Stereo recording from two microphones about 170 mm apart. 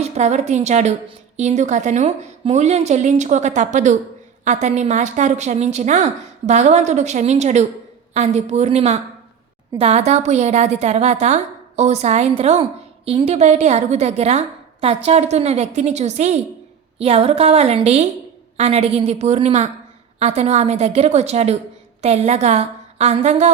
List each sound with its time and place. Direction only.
0.0 s a woman's voice: 40° right (ahead or behind)